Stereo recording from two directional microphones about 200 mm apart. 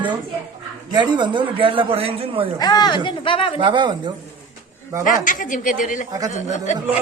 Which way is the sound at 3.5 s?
25° right (ahead or behind).